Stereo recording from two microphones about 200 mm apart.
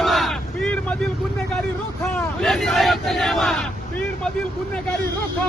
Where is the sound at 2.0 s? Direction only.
Centre (ahead or behind).